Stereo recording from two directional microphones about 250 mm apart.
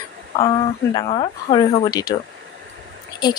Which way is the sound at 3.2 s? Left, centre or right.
Centre.